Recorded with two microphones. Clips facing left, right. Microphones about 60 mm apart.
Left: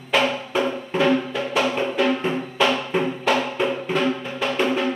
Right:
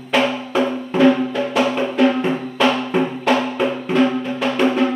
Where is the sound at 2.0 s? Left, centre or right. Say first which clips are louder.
Right 6 dB; centre.